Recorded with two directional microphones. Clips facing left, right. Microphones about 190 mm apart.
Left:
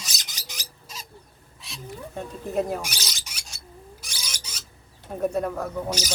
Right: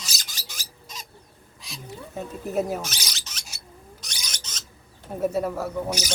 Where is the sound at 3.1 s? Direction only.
10° left (ahead or behind).